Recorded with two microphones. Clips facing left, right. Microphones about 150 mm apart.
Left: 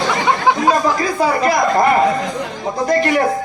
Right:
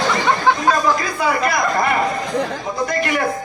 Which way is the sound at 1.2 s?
35° left (ahead or behind).